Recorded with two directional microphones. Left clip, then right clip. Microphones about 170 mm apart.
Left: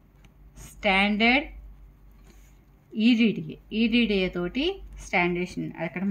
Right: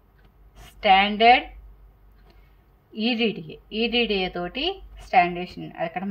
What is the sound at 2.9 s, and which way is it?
A woman's voice, 35° left (ahead or behind).